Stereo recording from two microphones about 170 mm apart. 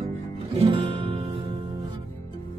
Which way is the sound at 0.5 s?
30° right (ahead or behind).